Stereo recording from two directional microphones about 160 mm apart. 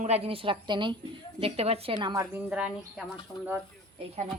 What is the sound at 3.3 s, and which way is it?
Speech, 10° left (ahead or behind).